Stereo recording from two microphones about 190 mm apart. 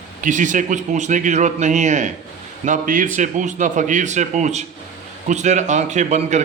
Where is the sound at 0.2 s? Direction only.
40° right (ahead or behind).